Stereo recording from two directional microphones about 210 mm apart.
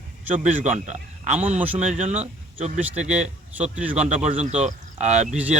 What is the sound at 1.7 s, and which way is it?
Speech, 35° right (ahead or behind).